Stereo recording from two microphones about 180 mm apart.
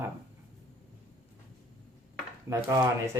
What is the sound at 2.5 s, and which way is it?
Speech, 15° right (ahead or behind).